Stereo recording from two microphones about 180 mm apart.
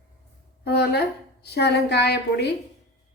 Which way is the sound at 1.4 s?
65° left (ahead or behind).